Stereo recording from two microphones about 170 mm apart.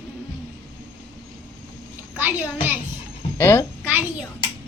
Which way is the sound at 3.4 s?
15° left (ahead or behind).